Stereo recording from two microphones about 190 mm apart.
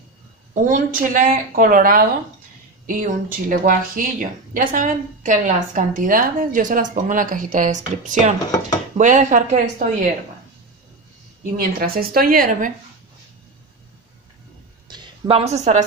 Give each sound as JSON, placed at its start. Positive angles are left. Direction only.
{"t": 0.7, "sound": "a woman's voice", "side_deg": -45}
{"t": 11.5, "sound": "a woman's voice", "side_deg": -50}
{"t": 14.9, "sound": "a woman's voice", "side_deg": -25}